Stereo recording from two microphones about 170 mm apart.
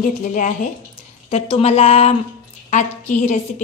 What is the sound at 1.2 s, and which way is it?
A woman's voice, 35° left (ahead or behind).